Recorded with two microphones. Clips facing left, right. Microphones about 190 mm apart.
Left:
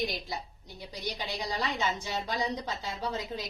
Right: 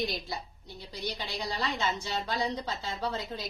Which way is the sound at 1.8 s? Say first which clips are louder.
Even; 15° left (ahead or behind).